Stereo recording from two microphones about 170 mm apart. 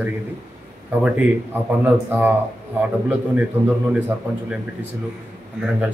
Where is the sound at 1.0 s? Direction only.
10° right (ahead or behind).